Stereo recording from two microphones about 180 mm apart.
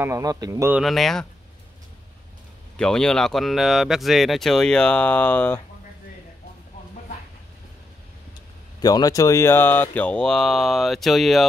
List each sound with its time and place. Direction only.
0.0 s speech: 20° right (ahead or behind)
0.7 s speech: centre (ahead or behind)
2.8 s speech: 5° left (ahead or behind)
8.8 s speech: 20° left (ahead or behind); by 11.4 s centre (ahead or behind)